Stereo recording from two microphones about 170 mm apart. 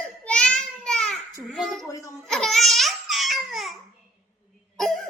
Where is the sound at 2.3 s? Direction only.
Centre (ahead or behind).